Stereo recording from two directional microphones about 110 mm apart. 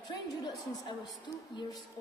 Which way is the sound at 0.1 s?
40° left (ahead or behind).